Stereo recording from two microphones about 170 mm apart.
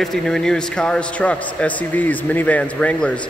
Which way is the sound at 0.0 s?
5° left (ahead or behind).